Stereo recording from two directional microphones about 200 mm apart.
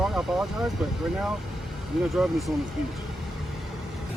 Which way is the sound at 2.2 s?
Centre (ahead or behind).